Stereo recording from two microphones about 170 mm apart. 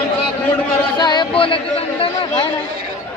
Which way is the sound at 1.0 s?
25° left (ahead or behind).